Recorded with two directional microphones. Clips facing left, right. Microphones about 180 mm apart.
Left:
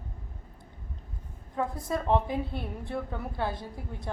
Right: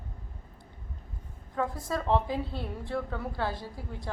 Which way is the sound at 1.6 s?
20° left (ahead or behind).